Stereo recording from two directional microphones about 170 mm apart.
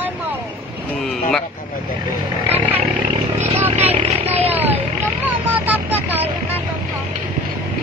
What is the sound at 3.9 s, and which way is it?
Vehicle, 35° right (ahead or behind).